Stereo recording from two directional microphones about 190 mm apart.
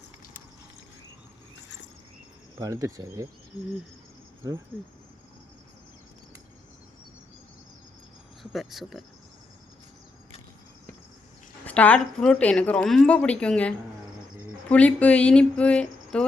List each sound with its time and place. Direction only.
2.6 s speech: 15° right (ahead or behind)
8.5 s speech: centre (ahead or behind)
11.6 s a woman's voice: 10° left (ahead or behind)